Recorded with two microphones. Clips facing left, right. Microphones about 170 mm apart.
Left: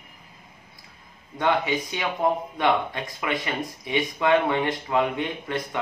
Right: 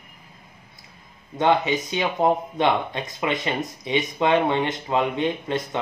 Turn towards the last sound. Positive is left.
turn(degrees=-20)  # may be behind; listen again after turning